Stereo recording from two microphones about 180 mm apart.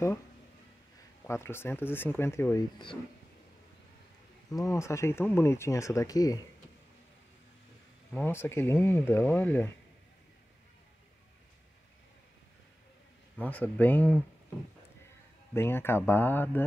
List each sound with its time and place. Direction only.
1.2 s speech: 15° left (ahead or behind)
4.5 s speech: 20° left (ahead or behind)
8.1 s speech: 10° left (ahead or behind)
13.4 s speech: 10° left (ahead or behind)
15.5 s speech: 15° left (ahead or behind)